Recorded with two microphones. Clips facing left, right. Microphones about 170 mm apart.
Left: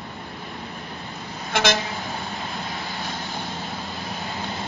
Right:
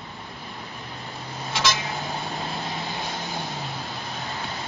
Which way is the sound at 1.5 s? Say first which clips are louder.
Left 4 dB; 60° left (ahead or behind).